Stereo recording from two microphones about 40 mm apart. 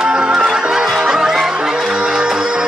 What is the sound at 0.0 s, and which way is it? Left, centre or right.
Music, right.